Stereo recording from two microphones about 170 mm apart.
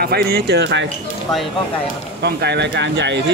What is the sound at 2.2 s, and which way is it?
Speech, 75° right (ahead or behind).